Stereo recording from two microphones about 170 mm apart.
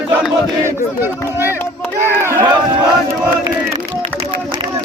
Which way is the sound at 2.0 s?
15° right (ahead or behind).